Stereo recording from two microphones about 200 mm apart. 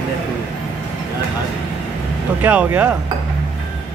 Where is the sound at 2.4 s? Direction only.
10° right (ahead or behind).